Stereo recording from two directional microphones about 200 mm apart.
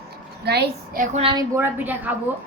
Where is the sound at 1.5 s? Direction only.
10° right (ahead or behind).